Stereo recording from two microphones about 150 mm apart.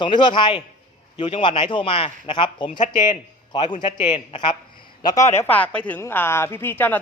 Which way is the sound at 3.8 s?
45° left (ahead or behind).